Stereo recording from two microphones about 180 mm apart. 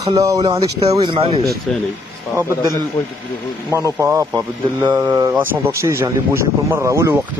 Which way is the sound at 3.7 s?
15° right (ahead or behind).